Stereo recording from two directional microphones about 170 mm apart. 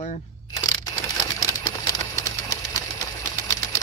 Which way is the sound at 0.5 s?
20° left (ahead or behind).